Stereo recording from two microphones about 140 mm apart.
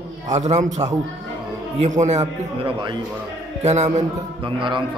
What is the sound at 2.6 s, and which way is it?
Speech, 35° right (ahead or behind).